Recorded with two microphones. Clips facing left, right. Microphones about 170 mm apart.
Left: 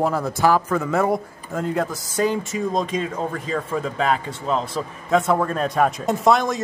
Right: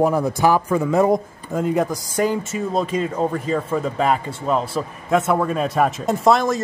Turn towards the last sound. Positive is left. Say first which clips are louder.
# right 2 dB
turn(degrees=0)  # may be behind; listen again after turning